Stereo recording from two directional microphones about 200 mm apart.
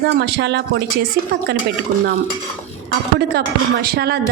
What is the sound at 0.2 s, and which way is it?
Speech, 60° right (ahead or behind).